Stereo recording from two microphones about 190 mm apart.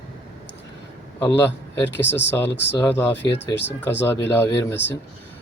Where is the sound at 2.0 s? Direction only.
65° left (ahead or behind).